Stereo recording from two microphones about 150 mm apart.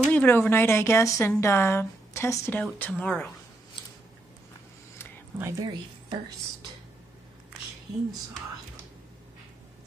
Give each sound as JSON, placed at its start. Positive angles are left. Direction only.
{"t": 0.0, "sound": "speech", "side_deg": 10}
{"t": 5.4, "sound": "a woman's voice", "side_deg": -25}